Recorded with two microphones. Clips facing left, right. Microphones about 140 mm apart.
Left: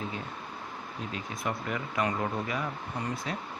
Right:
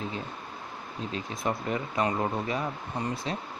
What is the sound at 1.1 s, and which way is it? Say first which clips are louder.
Speech: right 4 dB; 30° right (ahead or behind).